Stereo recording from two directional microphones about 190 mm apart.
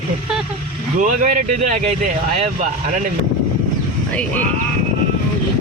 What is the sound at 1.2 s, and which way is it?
Speech, 40° right (ahead or behind).